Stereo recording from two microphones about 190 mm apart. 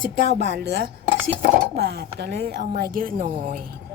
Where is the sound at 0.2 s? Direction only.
60° right (ahead or behind); by 3.6 s 45° right (ahead or behind).